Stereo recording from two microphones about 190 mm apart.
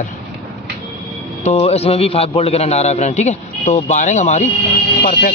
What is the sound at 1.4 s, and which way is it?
A man's voice, 30° left (ahead or behind).